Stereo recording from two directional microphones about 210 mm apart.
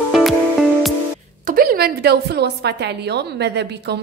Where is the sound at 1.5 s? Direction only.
45° right (ahead or behind).